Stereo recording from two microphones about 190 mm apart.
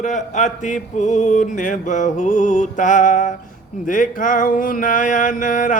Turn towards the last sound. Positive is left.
turn(degrees=45)  # may be behind; listen again after turning